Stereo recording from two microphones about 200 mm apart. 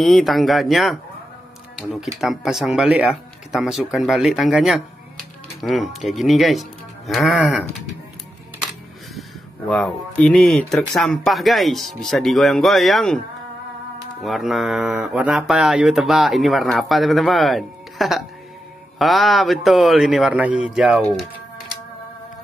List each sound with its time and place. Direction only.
0.0 s speech: centre (ahead or behind)
9.7 s speech: 5° left (ahead or behind)
14.2 s speech: centre (ahead or behind)